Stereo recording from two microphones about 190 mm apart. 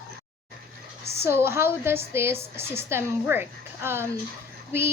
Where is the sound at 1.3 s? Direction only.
15° right (ahead or behind).